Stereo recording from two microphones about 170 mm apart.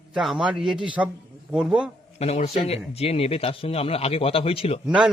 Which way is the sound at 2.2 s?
40° left (ahead or behind).